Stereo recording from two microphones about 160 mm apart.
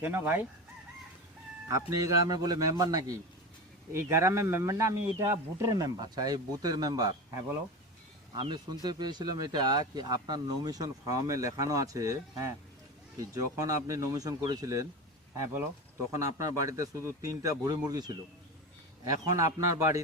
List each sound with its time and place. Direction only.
0.0 s chicken: 15° right (ahead or behind)
1.6 s speech: 20° right (ahead or behind)
16.1 s speech: 20° right (ahead or behind)
19.5 s chicken: 20° right (ahead or behind)